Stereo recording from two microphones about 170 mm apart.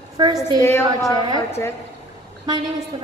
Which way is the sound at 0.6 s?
15° left (ahead or behind).